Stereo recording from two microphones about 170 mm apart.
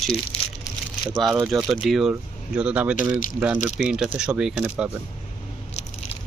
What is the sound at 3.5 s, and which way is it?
Speech, 45° left (ahead or behind).